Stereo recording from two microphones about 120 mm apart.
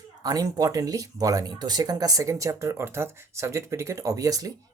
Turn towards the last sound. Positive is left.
turn(degrees=-30)  # may be behind; listen again after turning